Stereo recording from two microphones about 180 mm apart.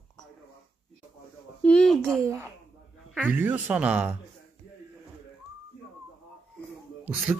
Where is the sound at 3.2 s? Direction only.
10° right (ahead or behind).